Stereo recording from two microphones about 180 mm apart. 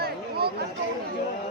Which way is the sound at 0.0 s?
60° right (ahead or behind).